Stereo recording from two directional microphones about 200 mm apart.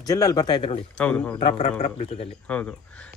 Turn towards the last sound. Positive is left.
turn(degrees=5)  # may be behind; listen again after turning